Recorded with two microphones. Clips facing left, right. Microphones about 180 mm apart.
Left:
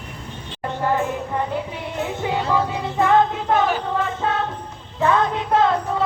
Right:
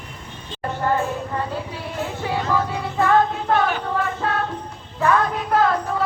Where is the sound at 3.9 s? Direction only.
20° left (ahead or behind).